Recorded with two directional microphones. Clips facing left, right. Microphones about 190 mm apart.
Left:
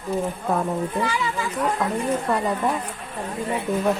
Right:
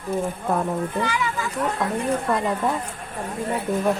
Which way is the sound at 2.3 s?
10° left (ahead or behind).